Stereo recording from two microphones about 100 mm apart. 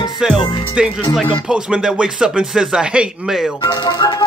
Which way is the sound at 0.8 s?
5° right (ahead or behind).